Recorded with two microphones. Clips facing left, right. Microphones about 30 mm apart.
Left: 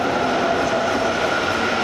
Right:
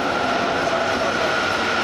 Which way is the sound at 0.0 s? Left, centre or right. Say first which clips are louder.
Left 1 dB; centre.